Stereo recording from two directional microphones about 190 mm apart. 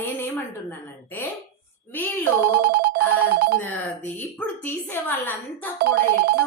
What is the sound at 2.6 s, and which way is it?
Ringtone, 55° right (ahead or behind).